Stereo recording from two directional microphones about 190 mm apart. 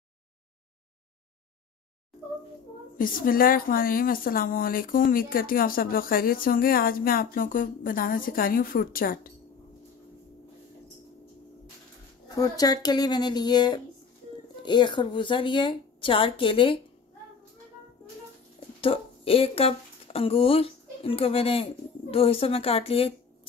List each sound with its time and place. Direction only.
3.0 s a woman's voice: 50° left (ahead or behind)
12.3 s a woman's voice: 20° left (ahead or behind)
18.8 s a woman's voice: 30° left (ahead or behind)